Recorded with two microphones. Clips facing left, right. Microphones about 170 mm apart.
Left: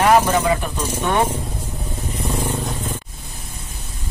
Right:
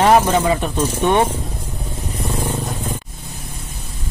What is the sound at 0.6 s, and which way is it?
Speech, 20° right (ahead or behind).